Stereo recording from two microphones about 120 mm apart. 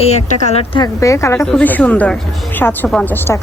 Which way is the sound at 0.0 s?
60° left (ahead or behind).